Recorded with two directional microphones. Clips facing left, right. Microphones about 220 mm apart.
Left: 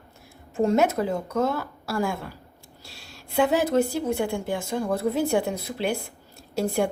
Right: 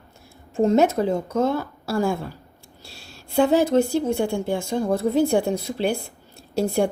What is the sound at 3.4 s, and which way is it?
A woman's voice, 30° right (ahead or behind).